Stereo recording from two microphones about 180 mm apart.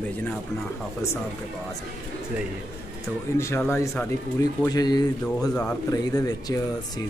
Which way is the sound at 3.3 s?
15° left (ahead or behind).